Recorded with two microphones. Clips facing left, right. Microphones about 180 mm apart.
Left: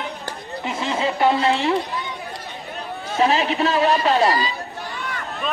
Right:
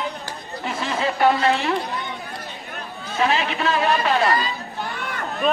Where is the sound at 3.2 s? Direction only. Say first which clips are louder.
Left 3 dB; 35° left (ahead or behind).